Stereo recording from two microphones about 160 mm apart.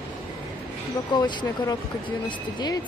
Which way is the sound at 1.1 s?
30° left (ahead or behind).